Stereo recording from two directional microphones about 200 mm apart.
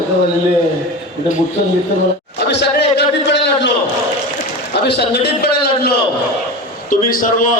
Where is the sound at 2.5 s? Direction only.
60° left (ahead or behind).